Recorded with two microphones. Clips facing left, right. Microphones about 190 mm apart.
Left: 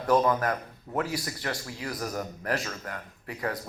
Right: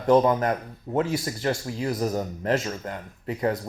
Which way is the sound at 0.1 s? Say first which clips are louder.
Right 5 dB; 25° right (ahead or behind).